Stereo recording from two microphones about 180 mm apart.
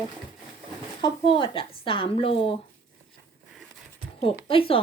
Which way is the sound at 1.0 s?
30° left (ahead or behind).